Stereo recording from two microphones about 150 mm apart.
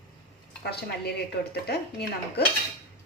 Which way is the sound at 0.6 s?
90° left.